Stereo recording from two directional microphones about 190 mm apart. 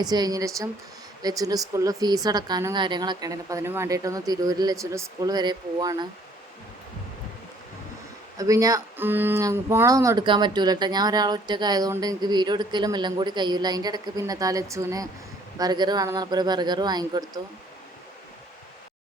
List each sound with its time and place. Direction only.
0.0 s speech: 20° right (ahead or behind)
8.4 s speech: 20° right (ahead or behind)